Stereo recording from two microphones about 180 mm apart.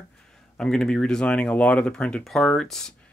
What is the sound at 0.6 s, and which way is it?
Speech, 5° left (ahead or behind).